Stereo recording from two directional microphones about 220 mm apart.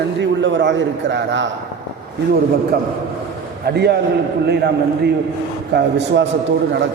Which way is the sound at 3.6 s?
50° right (ahead or behind).